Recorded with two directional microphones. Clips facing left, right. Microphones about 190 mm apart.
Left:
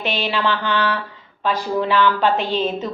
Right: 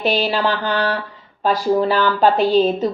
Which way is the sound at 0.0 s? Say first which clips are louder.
Right 4 dB; 40° right (ahead or behind).